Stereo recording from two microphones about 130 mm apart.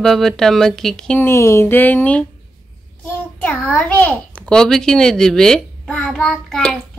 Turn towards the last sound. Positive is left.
turn(degrees=5)  # may be behind; listen again after turning